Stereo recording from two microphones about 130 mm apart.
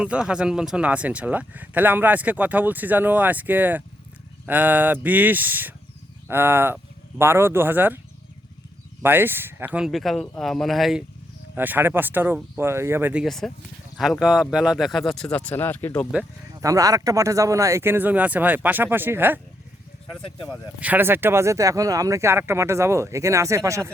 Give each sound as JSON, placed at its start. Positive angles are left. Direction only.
{"t": 0.0, "sound": "speech", "side_deg": -10}
{"t": 9.0, "sound": "speech", "side_deg": -15}
{"t": 11.5, "sound": "speech", "side_deg": -15}
{"t": 13.2, "sound": "speech", "side_deg": 5}
{"t": 16.6, "sound": "speech", "side_deg": -25}
{"t": 20.8, "sound": "speech", "side_deg": -15}